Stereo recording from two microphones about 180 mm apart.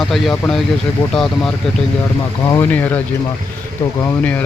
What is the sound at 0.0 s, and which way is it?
Speech, centre (ahead or behind).